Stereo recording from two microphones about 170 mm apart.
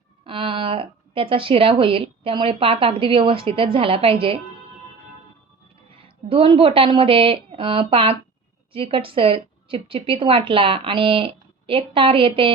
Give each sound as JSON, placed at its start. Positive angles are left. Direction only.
{"t": 0.3, "sound": "speech", "side_deg": -30}
{"t": 5.9, "sound": "a woman's voice", "side_deg": -30}